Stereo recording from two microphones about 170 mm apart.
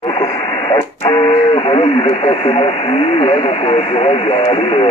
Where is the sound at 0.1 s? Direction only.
20° left (ahead or behind).